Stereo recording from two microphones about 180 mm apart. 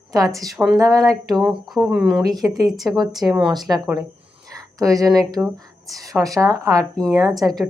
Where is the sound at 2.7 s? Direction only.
Centre (ahead or behind).